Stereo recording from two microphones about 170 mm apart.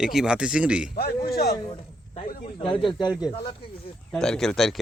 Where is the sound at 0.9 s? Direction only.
60° left (ahead or behind).